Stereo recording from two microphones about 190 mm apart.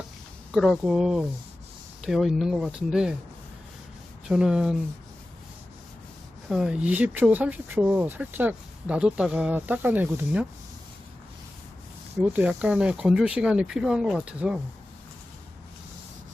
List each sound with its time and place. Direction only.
0.5 s speech: centre (ahead or behind)
4.3 s speech: 5° right (ahead or behind)
6.5 s speech: 5° right (ahead or behind)
12.1 s speech: 10° right (ahead or behind)